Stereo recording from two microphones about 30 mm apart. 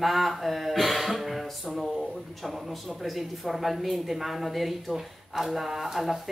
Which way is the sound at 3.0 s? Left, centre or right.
Centre.